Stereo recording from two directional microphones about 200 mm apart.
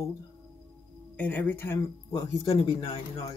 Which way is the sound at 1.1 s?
10° left (ahead or behind).